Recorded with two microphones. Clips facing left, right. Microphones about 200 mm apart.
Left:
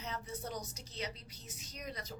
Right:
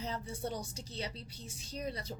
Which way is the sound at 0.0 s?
30° right (ahead or behind).